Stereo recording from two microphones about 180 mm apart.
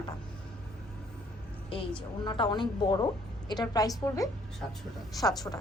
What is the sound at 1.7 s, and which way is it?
A woman's voice, 30° left (ahead or behind).